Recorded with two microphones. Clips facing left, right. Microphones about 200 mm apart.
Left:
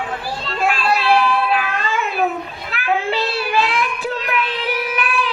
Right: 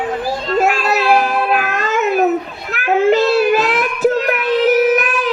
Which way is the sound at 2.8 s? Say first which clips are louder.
Right 8 dB; 45° right (ahead or behind).